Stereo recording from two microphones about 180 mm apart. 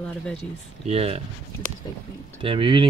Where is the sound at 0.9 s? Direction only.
35° right (ahead or behind).